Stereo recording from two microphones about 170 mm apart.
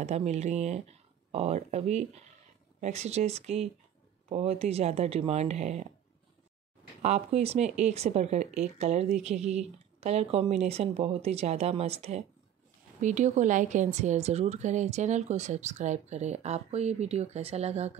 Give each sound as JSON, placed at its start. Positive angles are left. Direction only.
{"t": 0.0, "sound": "speech", "side_deg": -40}
{"t": 7.0, "sound": "speech", "side_deg": -40}